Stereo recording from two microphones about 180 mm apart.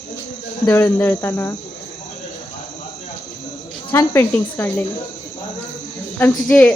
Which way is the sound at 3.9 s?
15° left (ahead or behind).